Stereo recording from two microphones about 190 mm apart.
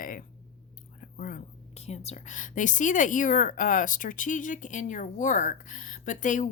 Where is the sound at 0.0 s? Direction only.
45° left (ahead or behind).